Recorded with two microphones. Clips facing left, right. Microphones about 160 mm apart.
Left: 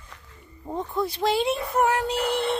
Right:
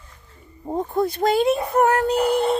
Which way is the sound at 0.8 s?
45° right (ahead or behind).